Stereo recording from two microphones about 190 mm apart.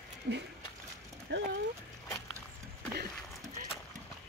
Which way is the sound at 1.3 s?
75° right (ahead or behind).